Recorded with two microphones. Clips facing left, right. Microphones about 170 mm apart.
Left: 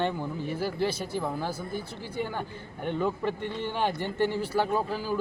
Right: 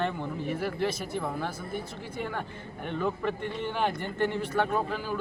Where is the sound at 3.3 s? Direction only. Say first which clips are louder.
Even; 30° left (ahead or behind).